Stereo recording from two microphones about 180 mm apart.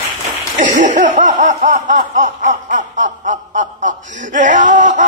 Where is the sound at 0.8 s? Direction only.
45° right (ahead or behind).